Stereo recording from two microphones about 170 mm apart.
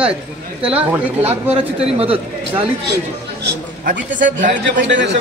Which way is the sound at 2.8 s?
80° right.